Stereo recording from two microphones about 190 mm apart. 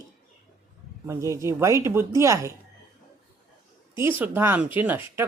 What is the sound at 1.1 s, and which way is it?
Speech, 15° right (ahead or behind).